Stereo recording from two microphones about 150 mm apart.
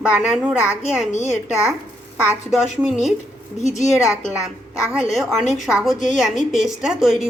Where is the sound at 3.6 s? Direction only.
50° left (ahead or behind).